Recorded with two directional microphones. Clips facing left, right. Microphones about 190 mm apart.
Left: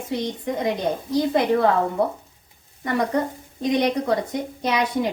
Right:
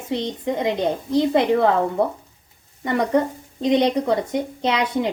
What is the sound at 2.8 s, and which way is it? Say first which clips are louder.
Speech: right 3 dB; 20° right (ahead or behind).